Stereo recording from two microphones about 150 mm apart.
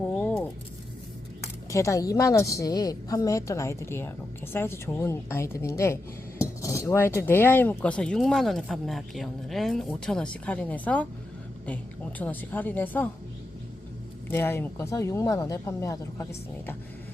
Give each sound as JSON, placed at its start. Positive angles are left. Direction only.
{"t": 0.0, "sound": "a sound", "side_deg": 10}
{"t": 1.7, "sound": "speech", "side_deg": 20}
{"t": 4.5, "sound": "cutlery", "side_deg": 15}
{"t": 14.3, "sound": "speech", "side_deg": 15}